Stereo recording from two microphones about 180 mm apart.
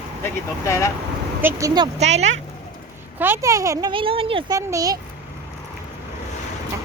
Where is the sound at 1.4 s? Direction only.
20° right (ahead or behind).